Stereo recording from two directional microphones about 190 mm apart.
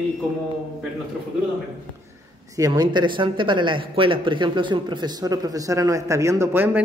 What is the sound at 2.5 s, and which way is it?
Speech, 20° right (ahead or behind).